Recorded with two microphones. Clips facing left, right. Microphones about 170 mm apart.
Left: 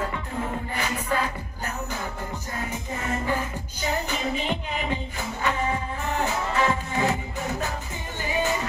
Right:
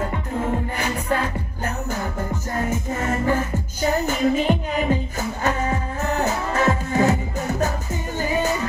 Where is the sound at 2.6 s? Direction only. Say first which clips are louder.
Right 5 dB; 45° right (ahead or behind).